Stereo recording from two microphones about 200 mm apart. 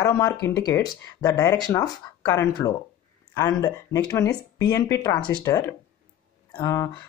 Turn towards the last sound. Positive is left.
turn(degrees=15)  # may be behind; listen again after turning